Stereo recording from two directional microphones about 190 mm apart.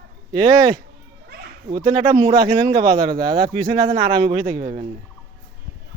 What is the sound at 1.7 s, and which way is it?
Speech, 20° right (ahead or behind).